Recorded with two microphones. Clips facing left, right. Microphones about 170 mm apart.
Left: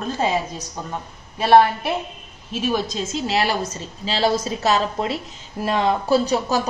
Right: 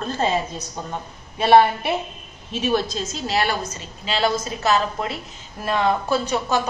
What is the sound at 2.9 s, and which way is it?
A woman's voice, 25° left (ahead or behind).